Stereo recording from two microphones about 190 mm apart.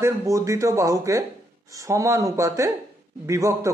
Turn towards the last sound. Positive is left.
turn(degrees=-15)  # may be behind; listen again after turning